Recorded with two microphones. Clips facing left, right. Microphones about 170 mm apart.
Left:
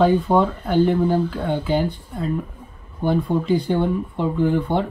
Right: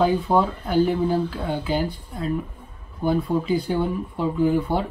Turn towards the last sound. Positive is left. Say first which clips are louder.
# left 1 dB
turn(degrees=-5)  # may be behind; listen again after turning